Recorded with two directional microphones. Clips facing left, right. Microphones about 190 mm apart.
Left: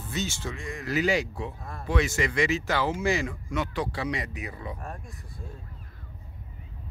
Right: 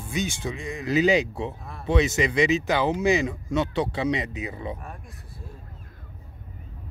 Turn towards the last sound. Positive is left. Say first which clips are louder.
# left 2 dB
turn(degrees=0)  # may be behind; listen again after turning